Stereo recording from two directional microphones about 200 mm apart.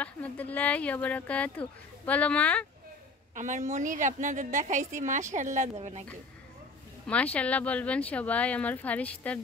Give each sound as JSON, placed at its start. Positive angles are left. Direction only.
{"t": 0.0, "sound": "speech", "side_deg": 5}
{"t": 3.3, "sound": "a woman's voice", "side_deg": -40}
{"t": 7.1, "sound": "speech", "side_deg": 5}